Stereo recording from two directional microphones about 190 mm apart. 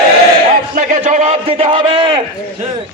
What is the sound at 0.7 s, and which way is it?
A man's voice, 40° right (ahead or behind).